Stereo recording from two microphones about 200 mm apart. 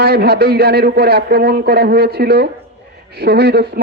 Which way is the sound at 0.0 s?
55° right (ahead or behind).